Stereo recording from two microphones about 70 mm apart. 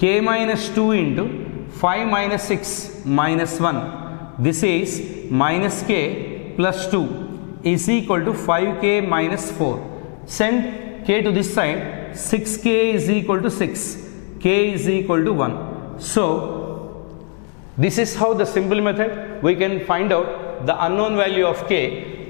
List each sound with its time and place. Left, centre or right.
0.0 s a man's voice: centre
17.7 s a man's voice: centre